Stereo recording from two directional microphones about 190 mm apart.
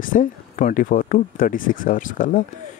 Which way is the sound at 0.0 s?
45° left (ahead or behind).